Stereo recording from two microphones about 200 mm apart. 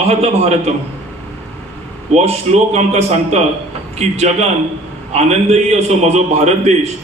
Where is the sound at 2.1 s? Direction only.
35° right (ahead or behind).